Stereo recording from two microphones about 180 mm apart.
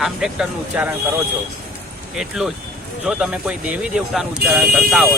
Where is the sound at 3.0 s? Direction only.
5° right (ahead or behind).